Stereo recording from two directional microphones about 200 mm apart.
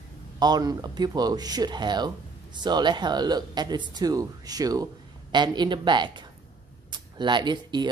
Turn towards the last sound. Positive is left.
turn(degrees=-20)  # may be behind; listen again after turning